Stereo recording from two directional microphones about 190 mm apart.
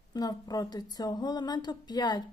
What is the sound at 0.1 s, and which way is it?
Speech, 20° left (ahead or behind).